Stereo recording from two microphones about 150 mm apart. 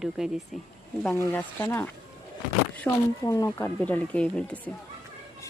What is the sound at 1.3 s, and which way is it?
Speech, 10° left (ahead or behind).